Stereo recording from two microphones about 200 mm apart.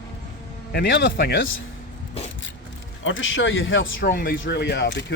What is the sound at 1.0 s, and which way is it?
Speech, 50° left (ahead or behind).